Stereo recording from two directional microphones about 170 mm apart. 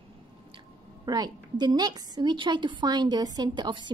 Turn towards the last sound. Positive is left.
turn(degrees=-25)  # may be behind; listen again after turning